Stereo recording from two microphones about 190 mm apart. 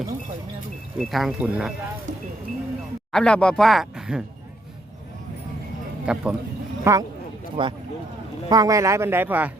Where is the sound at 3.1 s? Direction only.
5° left (ahead or behind).